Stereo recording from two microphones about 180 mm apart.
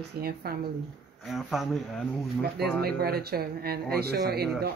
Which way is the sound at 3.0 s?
60° right (ahead or behind).